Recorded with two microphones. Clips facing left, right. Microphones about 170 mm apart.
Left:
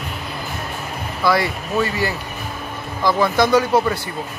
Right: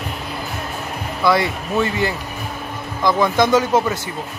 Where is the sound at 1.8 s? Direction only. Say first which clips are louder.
Right 2 dB; 25° right (ahead or behind).